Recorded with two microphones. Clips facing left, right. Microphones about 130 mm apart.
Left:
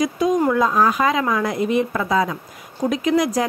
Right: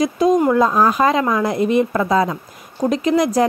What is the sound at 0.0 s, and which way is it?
Speech, 35° right (ahead or behind).